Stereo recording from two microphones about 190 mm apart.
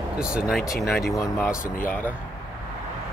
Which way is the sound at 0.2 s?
5° right (ahead or behind).